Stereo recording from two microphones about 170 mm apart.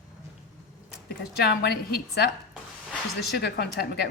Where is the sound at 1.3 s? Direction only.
65° left (ahead or behind).